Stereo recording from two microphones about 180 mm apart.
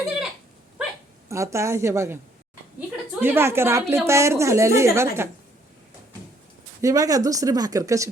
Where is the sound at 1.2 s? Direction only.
15° right (ahead or behind).